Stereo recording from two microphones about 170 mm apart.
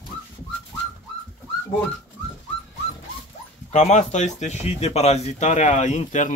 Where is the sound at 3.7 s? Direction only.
45° left (ahead or behind).